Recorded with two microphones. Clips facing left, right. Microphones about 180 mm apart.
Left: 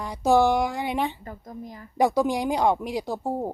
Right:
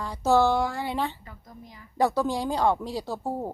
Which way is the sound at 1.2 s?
45° left (ahead or behind).